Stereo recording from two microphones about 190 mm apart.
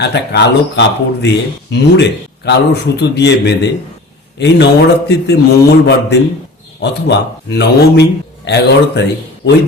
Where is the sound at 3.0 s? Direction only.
65° left (ahead or behind).